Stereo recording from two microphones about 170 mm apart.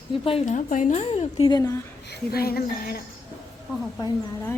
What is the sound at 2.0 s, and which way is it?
Speech, 65° left (ahead or behind).